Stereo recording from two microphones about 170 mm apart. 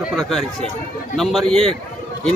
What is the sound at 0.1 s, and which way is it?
A man's voice, centre (ahead or behind).